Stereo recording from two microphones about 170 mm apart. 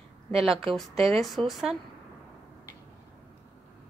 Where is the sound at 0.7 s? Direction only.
Centre (ahead or behind).